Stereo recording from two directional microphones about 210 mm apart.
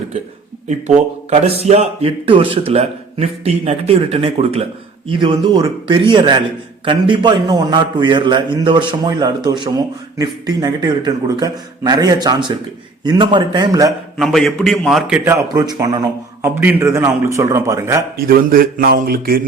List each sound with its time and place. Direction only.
1.6 s a man's voice: 30° right (ahead or behind)
14.2 s a man's voice: centre (ahead or behind)
18.3 s speech: 45° right (ahead or behind)